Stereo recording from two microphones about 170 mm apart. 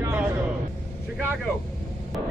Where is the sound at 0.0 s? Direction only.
10° right (ahead or behind).